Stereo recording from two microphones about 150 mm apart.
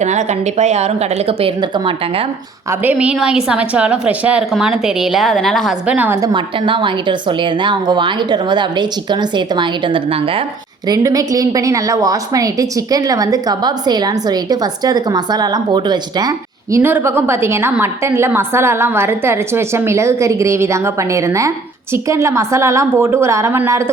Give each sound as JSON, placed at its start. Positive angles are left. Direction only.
{"t": 0.0, "sound": "speech", "side_deg": -50}
{"t": 2.8, "sound": "a woman's voice", "side_deg": -5}
{"t": 6.0, "sound": "a woman's voice", "side_deg": -15}
{"t": 6.3, "sound": "a woman's voice", "side_deg": -35}
{"t": 10.8, "sound": "a woman's voice", "side_deg": -25}
{"t": 16.7, "sound": "a woman's voice", "side_deg": -15}